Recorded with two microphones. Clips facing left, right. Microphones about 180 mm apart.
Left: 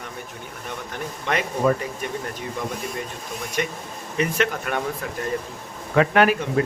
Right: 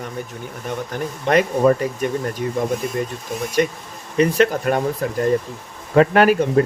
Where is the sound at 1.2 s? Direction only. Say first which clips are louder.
Right 6 dB; 40° right (ahead or behind).